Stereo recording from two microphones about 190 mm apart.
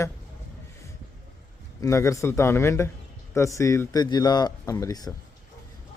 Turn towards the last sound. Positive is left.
turn(degrees=20)  # may be behind; listen again after turning